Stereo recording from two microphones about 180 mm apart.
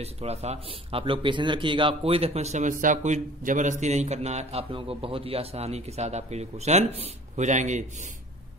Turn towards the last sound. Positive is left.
turn(degrees=-40)  # may be behind; listen again after turning